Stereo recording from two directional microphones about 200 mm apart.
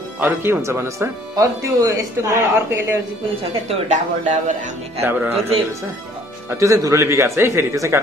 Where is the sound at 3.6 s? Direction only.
35° right (ahead or behind).